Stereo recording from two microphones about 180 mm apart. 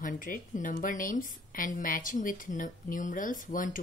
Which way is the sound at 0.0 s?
50° left (ahead or behind).